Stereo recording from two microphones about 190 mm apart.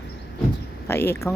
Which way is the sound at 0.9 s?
10° left (ahead or behind).